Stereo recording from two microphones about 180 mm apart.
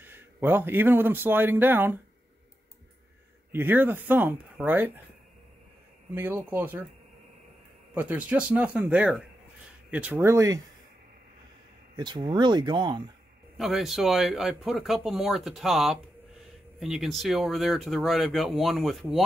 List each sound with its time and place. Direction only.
0.0 s a man's voice: 10° right (ahead or behind)
3.5 s speech: 10° right (ahead or behind)
6.1 s speech: 10° right (ahead or behind)
7.9 s speech: 10° right (ahead or behind)
12.0 s speech: 25° right (ahead or behind)
13.6 s speech: centre (ahead or behind)